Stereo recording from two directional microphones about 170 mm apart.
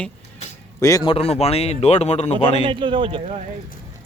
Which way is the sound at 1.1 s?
35° left (ahead or behind).